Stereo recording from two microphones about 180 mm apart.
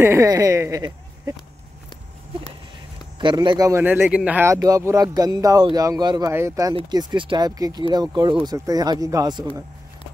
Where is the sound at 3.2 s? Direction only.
25° right (ahead or behind).